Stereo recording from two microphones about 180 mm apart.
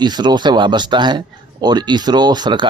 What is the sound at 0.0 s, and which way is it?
Speech, 25° right (ahead or behind).